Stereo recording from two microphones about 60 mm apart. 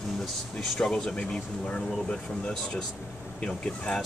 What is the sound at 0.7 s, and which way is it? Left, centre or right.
Speech, centre.